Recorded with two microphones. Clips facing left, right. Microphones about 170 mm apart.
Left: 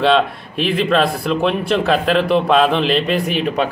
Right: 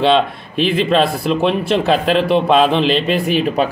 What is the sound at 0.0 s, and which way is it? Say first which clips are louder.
A man's voice: right 1 dB; 25° right (ahead or behind).